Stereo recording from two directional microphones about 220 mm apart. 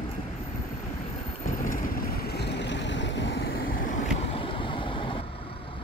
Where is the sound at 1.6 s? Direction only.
40° left (ahead or behind).